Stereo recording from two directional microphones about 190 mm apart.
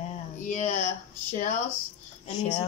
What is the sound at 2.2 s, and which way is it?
Speech, 35° left (ahead or behind).